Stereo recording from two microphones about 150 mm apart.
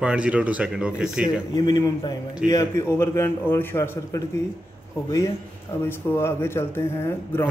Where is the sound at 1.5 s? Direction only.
25° left (ahead or behind).